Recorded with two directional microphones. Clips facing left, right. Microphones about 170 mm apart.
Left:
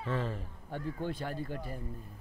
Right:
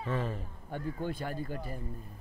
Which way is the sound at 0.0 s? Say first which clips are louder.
Right 1 dB; 15° right (ahead or behind).